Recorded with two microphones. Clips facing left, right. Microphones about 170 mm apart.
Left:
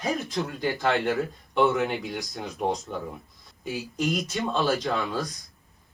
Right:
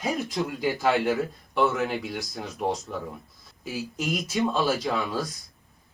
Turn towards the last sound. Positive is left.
turn(degrees=-5)  # may be behind; listen again after turning